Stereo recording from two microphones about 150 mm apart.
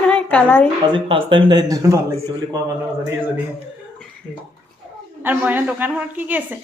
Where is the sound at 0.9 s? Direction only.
35° right (ahead or behind).